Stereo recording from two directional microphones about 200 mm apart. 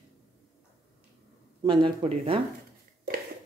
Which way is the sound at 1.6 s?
25° right (ahead or behind).